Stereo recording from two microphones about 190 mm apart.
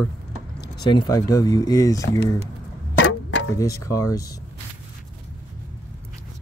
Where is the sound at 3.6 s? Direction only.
15° left (ahead or behind).